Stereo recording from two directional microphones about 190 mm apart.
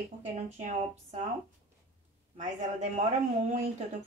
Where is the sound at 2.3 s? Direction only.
35° right (ahead or behind).